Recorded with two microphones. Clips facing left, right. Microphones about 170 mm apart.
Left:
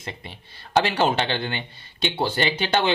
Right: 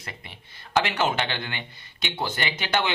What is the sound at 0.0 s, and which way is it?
Speech, 25° left (ahead or behind).